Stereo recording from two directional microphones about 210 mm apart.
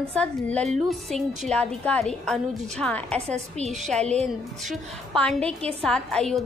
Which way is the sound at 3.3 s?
30° right (ahead or behind).